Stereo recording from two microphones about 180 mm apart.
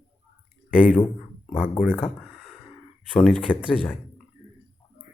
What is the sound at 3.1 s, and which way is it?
Speech, 5° left (ahead or behind).